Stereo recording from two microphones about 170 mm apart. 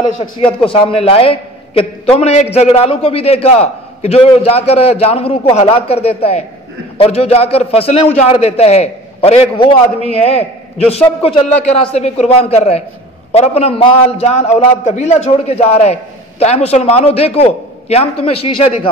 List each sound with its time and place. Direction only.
0.2 s a man's voice: 30° left (ahead or behind)